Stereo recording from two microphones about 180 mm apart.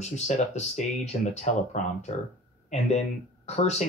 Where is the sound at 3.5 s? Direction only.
40° left (ahead or behind).